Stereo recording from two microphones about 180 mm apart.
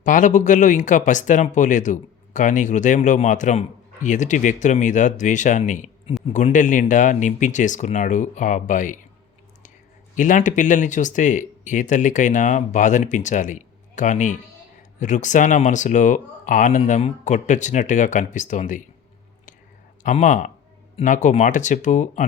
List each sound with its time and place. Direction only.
0.0 s speech: 45° left (ahead or behind)
10.2 s speech: 45° left (ahead or behind)
20.0 s speech: 45° left (ahead or behind)